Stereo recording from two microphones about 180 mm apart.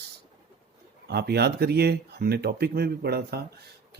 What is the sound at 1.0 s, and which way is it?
Speech, 65° right (ahead or behind).